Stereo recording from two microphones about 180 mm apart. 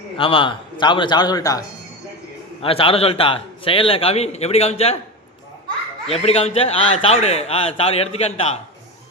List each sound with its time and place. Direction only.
0.2 s a man's voice: 30° left (ahead or behind)
2.6 s a man's voice: 30° left (ahead or behind)
6.1 s a man's voice: 35° left (ahead or behind)